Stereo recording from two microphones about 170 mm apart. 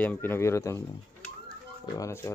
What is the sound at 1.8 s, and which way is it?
Speech, 15° left (ahead or behind).